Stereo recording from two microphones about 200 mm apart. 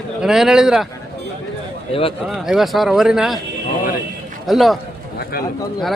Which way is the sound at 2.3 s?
Centre (ahead or behind).